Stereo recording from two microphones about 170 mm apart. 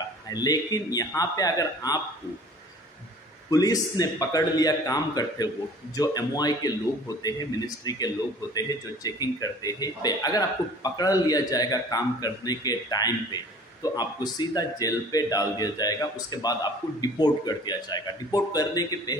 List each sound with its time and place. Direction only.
0.3 s a man's voice: 20° left (ahead or behind)
3.4 s a man's voice: 20° left (ahead or behind)